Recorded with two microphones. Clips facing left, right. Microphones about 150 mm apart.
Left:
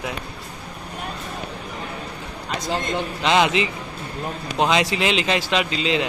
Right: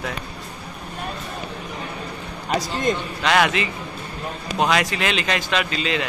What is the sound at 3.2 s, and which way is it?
A man's voice, 20° left (ahead or behind).